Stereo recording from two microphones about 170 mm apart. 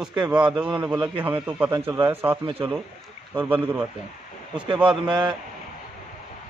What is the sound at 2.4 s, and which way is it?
Speech, 30° right (ahead or behind).